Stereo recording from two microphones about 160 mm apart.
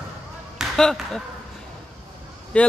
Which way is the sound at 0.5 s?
Centre (ahead or behind).